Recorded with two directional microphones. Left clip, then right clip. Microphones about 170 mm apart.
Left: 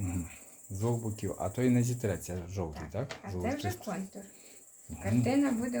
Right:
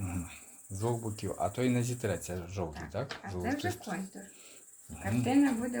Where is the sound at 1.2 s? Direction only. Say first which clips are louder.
Right 1 dB; 20° left (ahead or behind).